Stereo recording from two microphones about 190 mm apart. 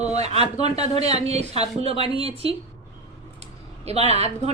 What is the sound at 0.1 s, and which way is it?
Speech, 35° right (ahead or behind).